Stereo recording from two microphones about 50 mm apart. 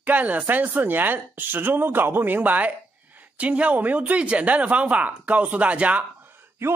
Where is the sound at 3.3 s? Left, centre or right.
Right.